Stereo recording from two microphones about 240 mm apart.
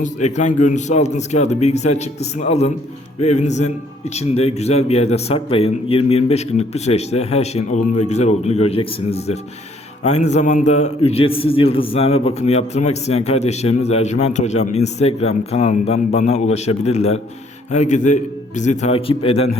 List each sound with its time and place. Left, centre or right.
0.0 s a man's voice: left